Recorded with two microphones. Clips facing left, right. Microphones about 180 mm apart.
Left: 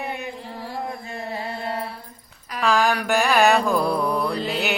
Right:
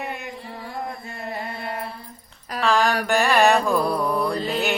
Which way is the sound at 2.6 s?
Centre (ahead or behind).